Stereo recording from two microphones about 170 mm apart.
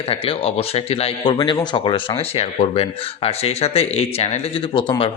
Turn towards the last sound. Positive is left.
turn(degrees=30)  # may be behind; listen again after turning